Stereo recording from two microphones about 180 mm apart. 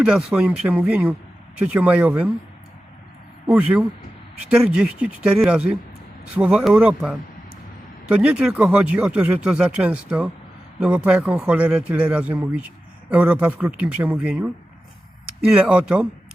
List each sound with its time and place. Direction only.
0.0 s speech: 5° right (ahead or behind)
3.4 s speech: 5° right (ahead or behind)
15.5 s speech: 5° right (ahead or behind)